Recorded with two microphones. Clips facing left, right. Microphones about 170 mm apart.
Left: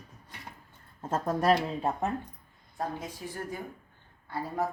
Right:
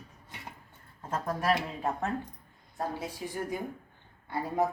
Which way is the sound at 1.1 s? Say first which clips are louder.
Left 4 dB; 25° left (ahead or behind).